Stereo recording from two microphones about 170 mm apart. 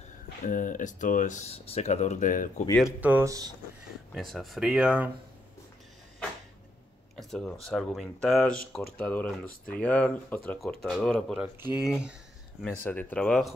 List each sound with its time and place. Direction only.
0.4 s speech: 50° left (ahead or behind)
2.8 s speech: 10° right (ahead or behind)
4.1 s speech: centre (ahead or behind)
7.2 s a sound: centre (ahead or behind)
7.6 s speech: centre (ahead or behind)
12.8 s speech: 10° left (ahead or behind)